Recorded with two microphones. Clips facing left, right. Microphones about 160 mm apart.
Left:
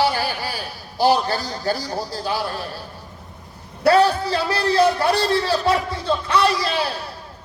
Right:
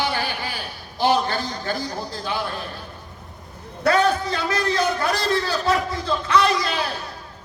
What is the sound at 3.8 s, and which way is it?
A man's voice, 35° left (ahead or behind).